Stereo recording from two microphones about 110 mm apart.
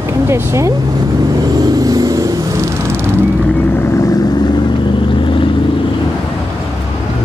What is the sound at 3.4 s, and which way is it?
Vehicle, 15° left (ahead or behind).